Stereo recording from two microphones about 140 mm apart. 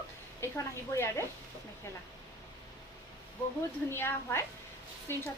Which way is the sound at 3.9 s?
15° left (ahead or behind).